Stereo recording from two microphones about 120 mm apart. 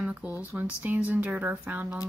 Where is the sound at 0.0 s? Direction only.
10° right (ahead or behind).